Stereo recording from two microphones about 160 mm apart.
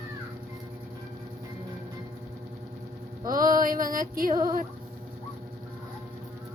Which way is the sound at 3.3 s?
60° right (ahead or behind).